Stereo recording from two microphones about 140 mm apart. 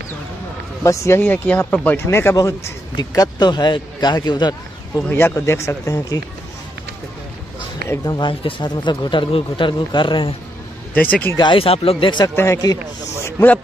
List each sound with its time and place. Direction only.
0.8 s speech: 20° left (ahead or behind)
5.0 s speech: 15° left (ahead or behind)
7.9 s speech: 30° left (ahead or behind)
11.0 s speech: 10° left (ahead or behind)
11.3 s speech: 35° left (ahead or behind)
13.2 s a sound: 15° left (ahead or behind)